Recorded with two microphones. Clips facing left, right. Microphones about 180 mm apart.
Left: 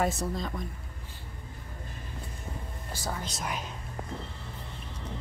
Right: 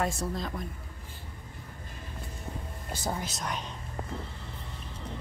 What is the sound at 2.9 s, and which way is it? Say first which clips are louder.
Speech: right 3 dB; 20° right (ahead or behind).